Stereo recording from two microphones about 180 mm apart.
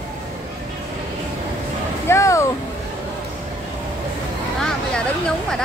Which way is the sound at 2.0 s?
15° left (ahead or behind).